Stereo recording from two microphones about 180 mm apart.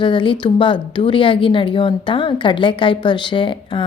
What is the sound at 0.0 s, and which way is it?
Speech, 25° left (ahead or behind).